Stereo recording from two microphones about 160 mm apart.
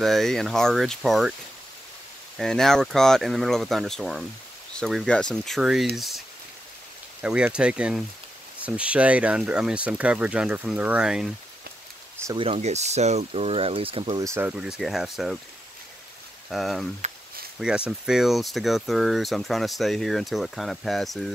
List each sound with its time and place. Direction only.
0.0 s speech: centre (ahead or behind)
2.3 s speech: 5° left (ahead or behind)
12.4 s speech: 40° right (ahead or behind)
14.2 s speech: 15° right (ahead or behind)
16.4 s speech: centre (ahead or behind)